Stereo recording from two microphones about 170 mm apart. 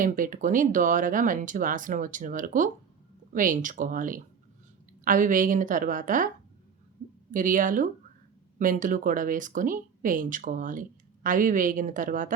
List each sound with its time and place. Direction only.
0.0 s speech: 50° right (ahead or behind)